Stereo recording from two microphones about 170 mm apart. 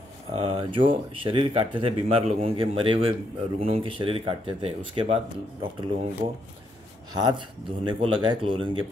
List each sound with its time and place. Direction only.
0.3 s speech: 30° right (ahead or behind)
7.2 s speech: 25° right (ahead or behind)